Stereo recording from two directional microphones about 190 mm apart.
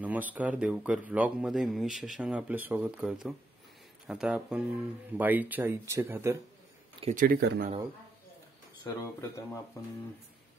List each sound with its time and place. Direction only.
0.0 s speech: 10° right (ahead or behind)
7.2 s speech: 50° right (ahead or behind)
8.8 s speech: 15° left (ahead or behind)